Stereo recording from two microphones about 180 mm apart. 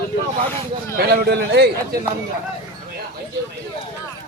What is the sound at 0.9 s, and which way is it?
A man's voice, 60° right (ahead or behind).